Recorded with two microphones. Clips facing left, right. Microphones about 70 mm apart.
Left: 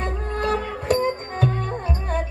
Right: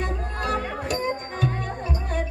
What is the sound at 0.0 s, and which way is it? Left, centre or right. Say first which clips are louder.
Music: left 3 dB; left.